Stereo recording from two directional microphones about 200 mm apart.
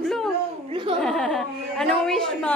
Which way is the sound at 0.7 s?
25° right (ahead or behind).